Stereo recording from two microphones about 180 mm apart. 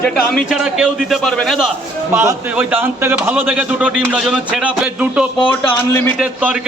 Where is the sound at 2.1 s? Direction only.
10° right (ahead or behind).